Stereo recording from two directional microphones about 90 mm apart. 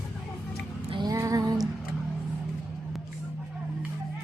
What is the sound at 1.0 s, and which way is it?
Music, 40° right (ahead or behind).